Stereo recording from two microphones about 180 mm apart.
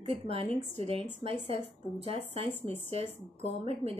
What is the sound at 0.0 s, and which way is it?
Speech, 30° right (ahead or behind).